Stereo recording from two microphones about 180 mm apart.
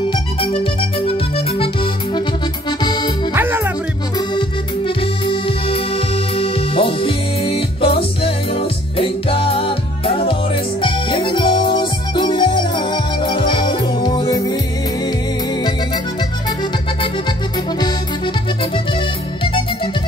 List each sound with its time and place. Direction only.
0.1 s music: 30° left (ahead or behind)
3.3 s music: 10° right (ahead or behind)
4.3 s music: 25° left (ahead or behind)
17.7 s music: 25° left (ahead or behind)